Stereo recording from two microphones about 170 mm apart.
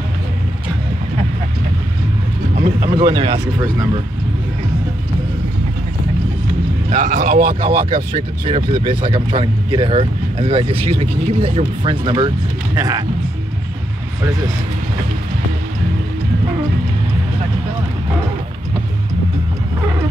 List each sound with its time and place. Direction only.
2.8 s speech: 25° right (ahead or behind)
6.9 s speech: 45° right (ahead or behind)
7.7 s speech: 30° right (ahead or behind)